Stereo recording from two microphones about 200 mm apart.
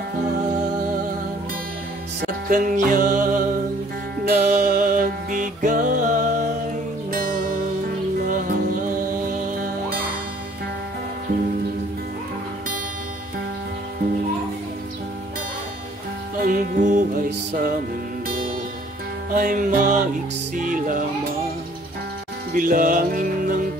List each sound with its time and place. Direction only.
2.5 s music: 40° right (ahead or behind)
16.3 s music: 40° right (ahead or behind)
19.3 s music: 45° right (ahead or behind)
22.5 s music: 45° right (ahead or behind)